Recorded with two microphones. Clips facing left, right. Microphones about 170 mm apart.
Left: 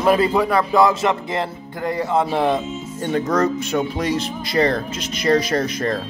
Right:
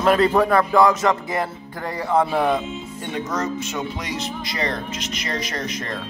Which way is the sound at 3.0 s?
50° left (ahead or behind).